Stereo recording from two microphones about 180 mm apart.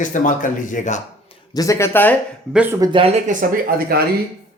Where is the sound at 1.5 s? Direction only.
20° left (ahead or behind).